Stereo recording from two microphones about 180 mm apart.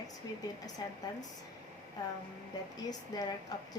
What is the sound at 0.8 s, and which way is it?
Speech, 20° left (ahead or behind).